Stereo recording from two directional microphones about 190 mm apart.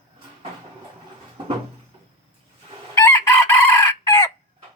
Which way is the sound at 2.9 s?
15° left (ahead or behind).